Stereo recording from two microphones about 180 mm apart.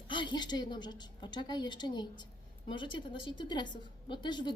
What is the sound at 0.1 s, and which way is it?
A woman's voice, 25° left (ahead or behind).